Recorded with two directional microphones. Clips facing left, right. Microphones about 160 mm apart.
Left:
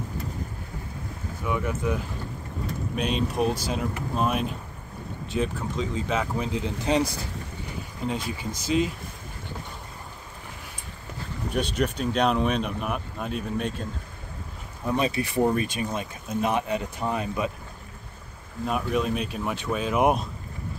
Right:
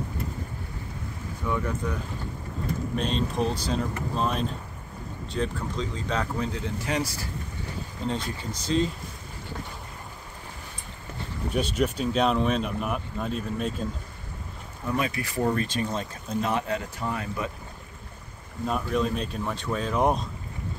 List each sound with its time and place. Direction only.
1.4 s speech: 10° left (ahead or behind)
3.2 s speech: 15° left (ahead or behind)
11.5 s speech: 5° right (ahead or behind)
15.0 s speech: 25° left (ahead or behind)
18.7 s speech: 5° left (ahead or behind)